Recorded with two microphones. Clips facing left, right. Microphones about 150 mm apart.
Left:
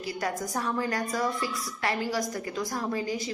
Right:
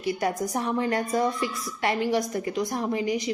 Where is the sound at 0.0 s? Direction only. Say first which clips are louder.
Right 5 dB; 25° right (ahead or behind).